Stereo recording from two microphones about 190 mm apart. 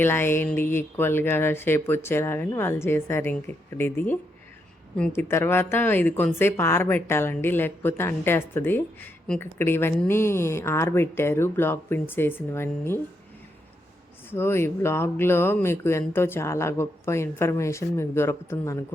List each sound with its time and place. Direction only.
0.0 s speech: 10° left (ahead or behind)
14.3 s speech: 15° left (ahead or behind)